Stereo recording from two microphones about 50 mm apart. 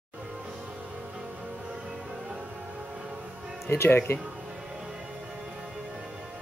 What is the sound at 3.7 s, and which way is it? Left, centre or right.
Speech, left.